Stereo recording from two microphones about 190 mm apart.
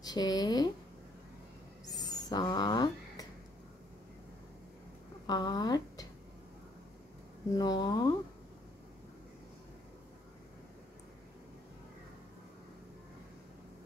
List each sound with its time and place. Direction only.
0.0 s speech: 20° left (ahead or behind)
1.9 s a sound: 20° left (ahead or behind)
5.2 s speech: 20° left (ahead or behind)
7.5 s speech: 20° left (ahead or behind)